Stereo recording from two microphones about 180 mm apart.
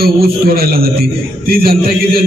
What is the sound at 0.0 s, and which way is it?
A man's voice, 60° right (ahead or behind).